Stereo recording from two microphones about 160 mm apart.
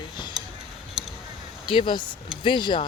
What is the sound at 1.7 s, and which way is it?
Speech, 30° left (ahead or behind).